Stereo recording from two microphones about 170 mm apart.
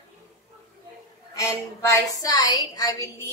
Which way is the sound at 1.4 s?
20° left (ahead or behind).